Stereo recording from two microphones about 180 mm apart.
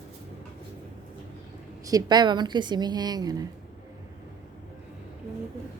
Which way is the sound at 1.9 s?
20° right (ahead or behind).